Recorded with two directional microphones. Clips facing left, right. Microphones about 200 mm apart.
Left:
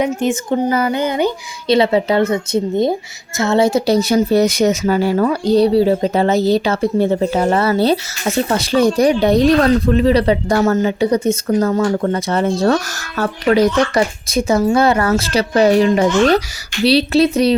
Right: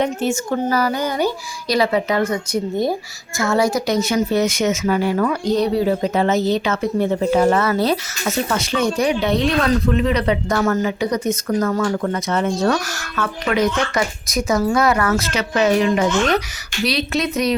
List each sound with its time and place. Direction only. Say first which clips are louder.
0.0 s speech: left 3 dB; 10° left (ahead or behind); by 17.5 s 30° left (ahead or behind)